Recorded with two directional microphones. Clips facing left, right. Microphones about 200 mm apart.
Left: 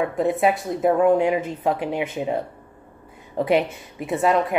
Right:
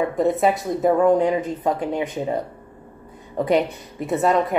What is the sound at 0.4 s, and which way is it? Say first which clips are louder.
Speech: right 1 dB; 5° left (ahead or behind).